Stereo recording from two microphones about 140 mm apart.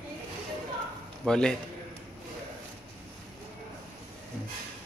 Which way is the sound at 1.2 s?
5° left (ahead or behind).